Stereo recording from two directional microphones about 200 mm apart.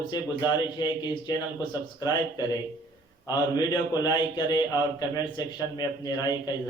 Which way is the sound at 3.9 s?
20° left (ahead or behind).